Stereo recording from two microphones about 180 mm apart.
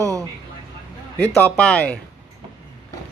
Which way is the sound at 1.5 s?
5° left (ahead or behind).